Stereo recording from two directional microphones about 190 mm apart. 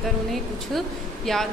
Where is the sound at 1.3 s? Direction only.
Centre (ahead or behind).